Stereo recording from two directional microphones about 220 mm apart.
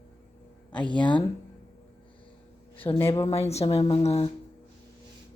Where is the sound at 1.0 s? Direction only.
20° left (ahead or behind).